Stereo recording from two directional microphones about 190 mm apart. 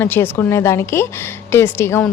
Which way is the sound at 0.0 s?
10° left (ahead or behind).